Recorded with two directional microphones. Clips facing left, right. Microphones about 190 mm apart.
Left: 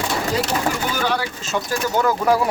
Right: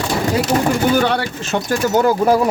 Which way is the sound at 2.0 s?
30° right (ahead or behind).